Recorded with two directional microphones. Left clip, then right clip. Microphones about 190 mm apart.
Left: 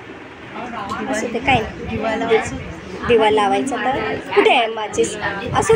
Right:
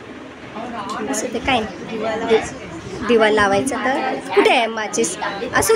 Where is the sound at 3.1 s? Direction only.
15° right (ahead or behind).